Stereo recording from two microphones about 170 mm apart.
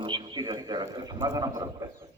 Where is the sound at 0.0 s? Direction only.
25° right (ahead or behind).